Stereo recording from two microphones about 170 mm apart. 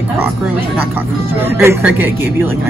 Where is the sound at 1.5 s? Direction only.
10° right (ahead or behind).